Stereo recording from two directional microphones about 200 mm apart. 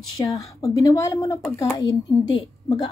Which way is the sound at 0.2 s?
20° left (ahead or behind).